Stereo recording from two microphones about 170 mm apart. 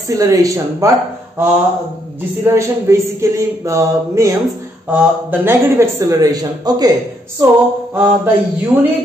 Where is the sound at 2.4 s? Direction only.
15° right (ahead or behind).